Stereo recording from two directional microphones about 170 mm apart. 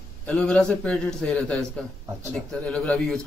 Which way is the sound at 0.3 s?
5° left (ahead or behind).